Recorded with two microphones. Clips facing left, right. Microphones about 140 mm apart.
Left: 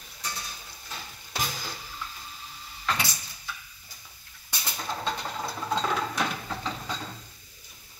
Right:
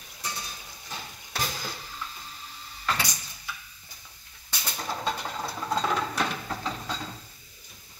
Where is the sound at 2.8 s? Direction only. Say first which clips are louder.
Even; centre (ahead or behind).